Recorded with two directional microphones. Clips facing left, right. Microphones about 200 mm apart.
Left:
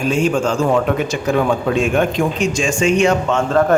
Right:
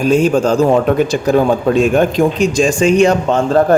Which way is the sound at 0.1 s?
35° right (ahead or behind).